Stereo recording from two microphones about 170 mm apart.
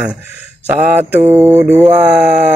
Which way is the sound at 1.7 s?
40° right (ahead or behind).